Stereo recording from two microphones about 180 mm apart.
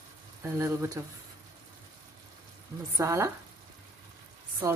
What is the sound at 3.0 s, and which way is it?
Speech, 15° right (ahead or behind).